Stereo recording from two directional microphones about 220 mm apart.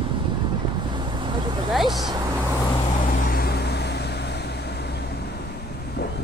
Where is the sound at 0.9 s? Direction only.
20° right (ahead or behind).